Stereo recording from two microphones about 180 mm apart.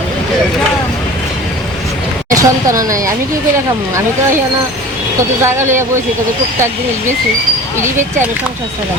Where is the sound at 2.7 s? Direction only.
15° right (ahead or behind).